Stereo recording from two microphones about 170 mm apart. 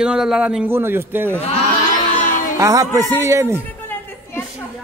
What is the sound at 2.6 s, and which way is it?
Music, 20° right (ahead or behind).